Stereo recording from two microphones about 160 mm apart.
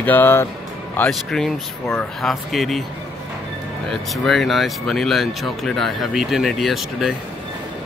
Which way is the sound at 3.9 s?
Centre (ahead or behind).